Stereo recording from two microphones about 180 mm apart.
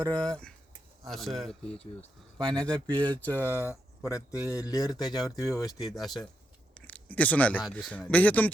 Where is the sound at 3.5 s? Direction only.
15° left (ahead or behind).